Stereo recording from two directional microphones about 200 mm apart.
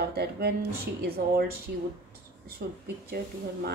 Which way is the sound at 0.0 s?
55° right (ahead or behind).